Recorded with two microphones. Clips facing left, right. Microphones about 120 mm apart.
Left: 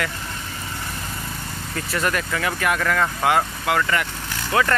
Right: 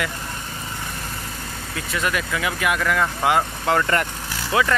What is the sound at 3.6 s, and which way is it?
Speech, 35° right (ahead or behind).